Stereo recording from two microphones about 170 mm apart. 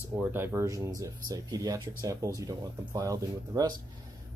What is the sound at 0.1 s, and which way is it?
Speech, 10° right (ahead or behind).